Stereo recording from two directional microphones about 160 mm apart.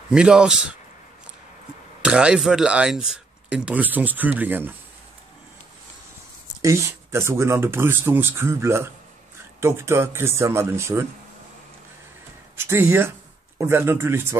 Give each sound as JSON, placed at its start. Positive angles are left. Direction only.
{"t": 0.1, "sound": "a man's voice", "side_deg": -5}
{"t": 2.0, "sound": "speech", "side_deg": -5}
{"t": 6.6, "sound": "speech", "side_deg": -15}
{"t": 12.5, "sound": "speech", "side_deg": -15}